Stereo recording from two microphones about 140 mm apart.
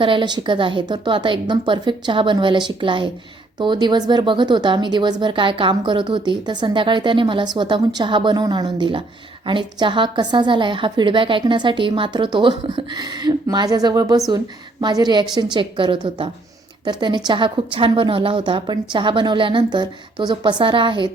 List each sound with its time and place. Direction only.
0.0 s speech: 35° right (ahead or behind)